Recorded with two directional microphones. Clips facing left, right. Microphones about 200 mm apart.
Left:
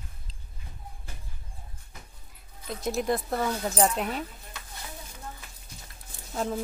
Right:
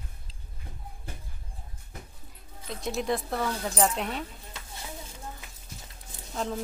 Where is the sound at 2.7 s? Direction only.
Centre (ahead or behind).